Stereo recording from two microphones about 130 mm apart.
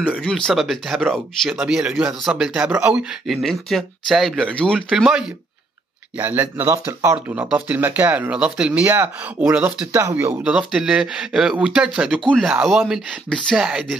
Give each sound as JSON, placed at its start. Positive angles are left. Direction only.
{"t": 0.2, "sound": "speech", "side_deg": 5}
{"t": 4.7, "sound": "speech", "side_deg": -5}
{"t": 7.3, "sound": "speech", "side_deg": -10}